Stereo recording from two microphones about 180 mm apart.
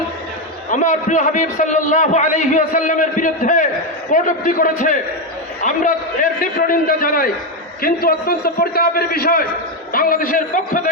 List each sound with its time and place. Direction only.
0.7 s a man's voice: 45° left (ahead or behind)